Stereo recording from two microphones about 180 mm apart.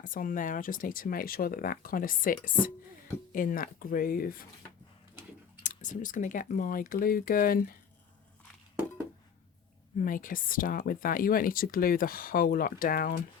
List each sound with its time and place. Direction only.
0.0 s speech: 50° left (ahead or behind)
5.6 s speech: 45° left (ahead or behind)
10.0 s speech: 50° left (ahead or behind)